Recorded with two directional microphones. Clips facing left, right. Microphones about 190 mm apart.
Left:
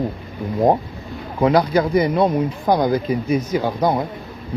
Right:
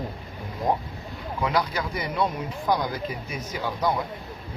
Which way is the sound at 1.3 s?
45° left (ahead or behind).